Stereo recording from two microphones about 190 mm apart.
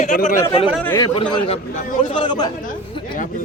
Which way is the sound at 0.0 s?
45° left (ahead or behind).